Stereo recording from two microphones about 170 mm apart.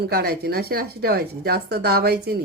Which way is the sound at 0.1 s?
65° right (ahead or behind).